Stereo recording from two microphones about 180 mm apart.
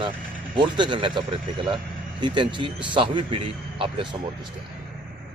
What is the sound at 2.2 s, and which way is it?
A man's voice, 25° right (ahead or behind).